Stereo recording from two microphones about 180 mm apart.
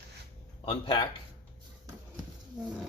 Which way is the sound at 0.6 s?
30° left (ahead or behind).